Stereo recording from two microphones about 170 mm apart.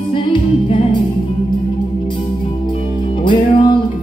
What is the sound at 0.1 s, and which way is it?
Music, 30° left (ahead or behind).